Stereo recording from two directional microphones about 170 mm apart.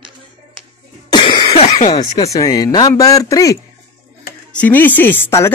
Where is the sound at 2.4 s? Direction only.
20° left (ahead or behind).